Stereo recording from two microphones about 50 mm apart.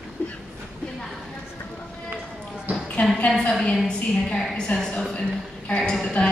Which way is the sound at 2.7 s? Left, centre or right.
Right.